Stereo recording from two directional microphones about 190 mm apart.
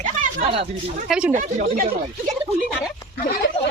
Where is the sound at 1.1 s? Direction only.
5° right (ahead or behind).